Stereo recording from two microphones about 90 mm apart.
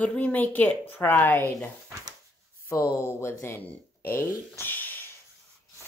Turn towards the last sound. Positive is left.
turn(degrees=20)  # may be behind; listen again after turning